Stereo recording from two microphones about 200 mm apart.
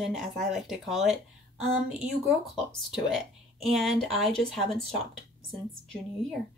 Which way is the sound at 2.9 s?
Centre (ahead or behind).